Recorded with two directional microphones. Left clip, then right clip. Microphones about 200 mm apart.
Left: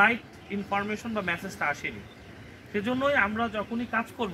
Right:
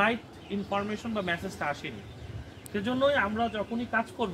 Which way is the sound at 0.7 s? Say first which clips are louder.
Left 2 dB; 20° right (ahead or behind).